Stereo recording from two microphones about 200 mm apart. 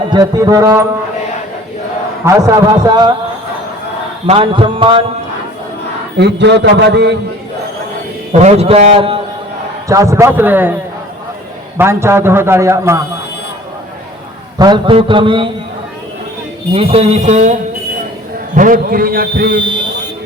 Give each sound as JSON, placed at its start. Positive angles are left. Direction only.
{"t": 0.1, "sound": "a man's voice", "side_deg": -20}
{"t": 2.2, "sound": "a man's voice", "side_deg": -15}
{"t": 4.3, "sound": "a man's voice", "side_deg": -25}
{"t": 6.1, "sound": "a man's voice", "side_deg": -60}
{"t": 8.3, "sound": "speech", "side_deg": -35}
{"t": 9.9, "sound": "a man's voice", "side_deg": -15}
{"t": 11.8, "sound": "a man's voice", "side_deg": -10}
{"t": 14.6, "sound": "a man's voice", "side_deg": -25}
{"t": 16.7, "sound": "a man's voice", "side_deg": -30}
{"t": 19.6, "sound": "a sound", "side_deg": -25}